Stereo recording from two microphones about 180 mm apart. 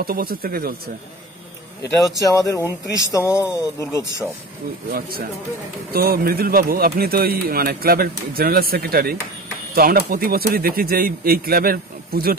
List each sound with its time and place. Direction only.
0.0 s speech: 55° right (ahead or behind)
1.8 s speech: 20° left (ahead or behind)
4.8 s speech: 55° right (ahead or behind)